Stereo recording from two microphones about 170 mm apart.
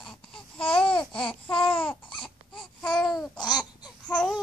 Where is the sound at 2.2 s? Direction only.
5° left (ahead or behind).